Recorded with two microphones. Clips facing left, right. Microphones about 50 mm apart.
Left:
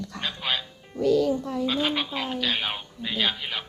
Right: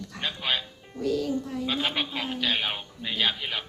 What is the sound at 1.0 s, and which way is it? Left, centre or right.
Speech, left.